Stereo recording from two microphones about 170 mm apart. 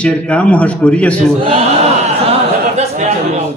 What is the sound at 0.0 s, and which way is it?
A man's voice, 5° left (ahead or behind).